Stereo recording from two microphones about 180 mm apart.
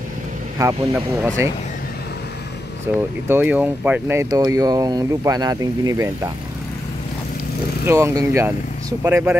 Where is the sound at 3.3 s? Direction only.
10° right (ahead or behind).